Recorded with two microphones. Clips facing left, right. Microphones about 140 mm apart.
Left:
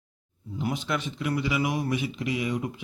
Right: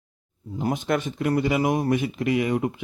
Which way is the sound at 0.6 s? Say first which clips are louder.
Right 5 dB; 50° right (ahead or behind).